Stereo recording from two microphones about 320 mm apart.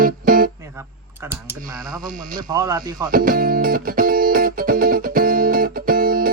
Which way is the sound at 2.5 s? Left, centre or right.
Centre.